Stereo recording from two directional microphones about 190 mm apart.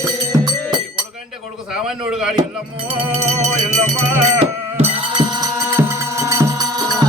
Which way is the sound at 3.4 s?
40° right (ahead or behind).